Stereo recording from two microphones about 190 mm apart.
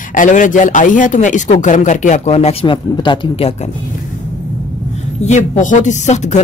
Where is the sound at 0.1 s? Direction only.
45° left (ahead or behind); by 3.5 s 30° left (ahead or behind).